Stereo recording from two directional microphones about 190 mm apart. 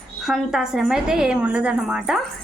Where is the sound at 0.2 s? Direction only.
Centre (ahead or behind).